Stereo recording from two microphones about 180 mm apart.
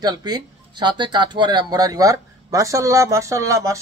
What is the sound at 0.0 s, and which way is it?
Speech, 25° right (ahead or behind).